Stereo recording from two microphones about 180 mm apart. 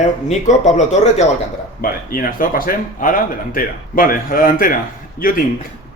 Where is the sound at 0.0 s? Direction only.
40° left (ahead or behind).